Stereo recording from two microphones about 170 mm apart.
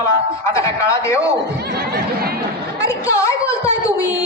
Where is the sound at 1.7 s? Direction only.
65° right (ahead or behind).